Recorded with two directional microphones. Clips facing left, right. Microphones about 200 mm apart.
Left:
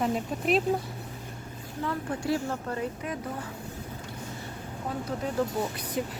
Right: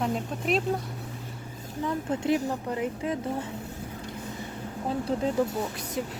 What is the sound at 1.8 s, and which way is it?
Speech, 20° right (ahead or behind).